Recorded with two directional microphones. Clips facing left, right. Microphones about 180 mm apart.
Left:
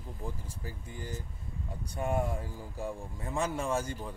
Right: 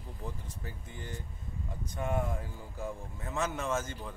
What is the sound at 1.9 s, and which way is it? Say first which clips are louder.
Speech: left 2 dB; 40° left (ahead or behind).